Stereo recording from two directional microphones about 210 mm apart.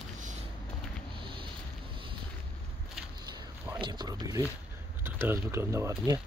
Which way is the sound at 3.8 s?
20° right (ahead or behind).